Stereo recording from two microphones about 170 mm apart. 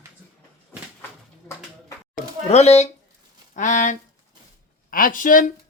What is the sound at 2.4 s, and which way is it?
Speech, 40° left (ahead or behind).